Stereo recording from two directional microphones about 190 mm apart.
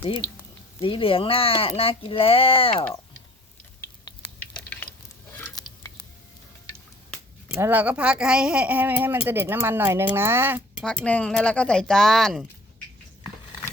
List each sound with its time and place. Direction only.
0.8 s speech: 25° left (ahead or behind)
5.3 s stir: 10° left (ahead or behind)
7.6 s speech: 10° right (ahead or behind)
10.8 s speech: 5° left (ahead or behind)